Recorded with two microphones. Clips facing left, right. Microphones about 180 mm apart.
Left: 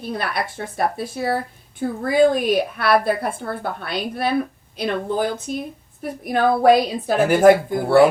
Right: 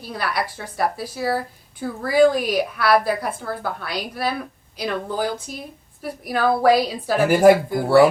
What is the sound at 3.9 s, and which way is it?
A woman's voice, 25° left (ahead or behind).